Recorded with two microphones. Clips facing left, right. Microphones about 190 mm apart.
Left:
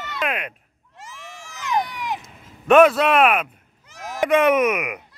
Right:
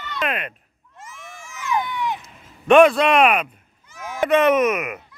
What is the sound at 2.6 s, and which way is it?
Speech, 5° left (ahead or behind).